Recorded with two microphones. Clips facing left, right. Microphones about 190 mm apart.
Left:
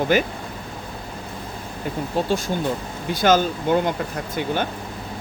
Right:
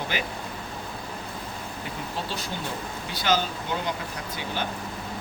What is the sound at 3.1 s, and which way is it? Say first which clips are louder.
Speech: left 8 dB; 50° left (ahead or behind).